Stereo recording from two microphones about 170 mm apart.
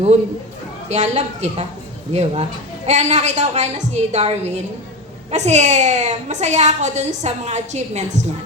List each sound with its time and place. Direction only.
0.9 s a woman's voice: 40° right (ahead or behind)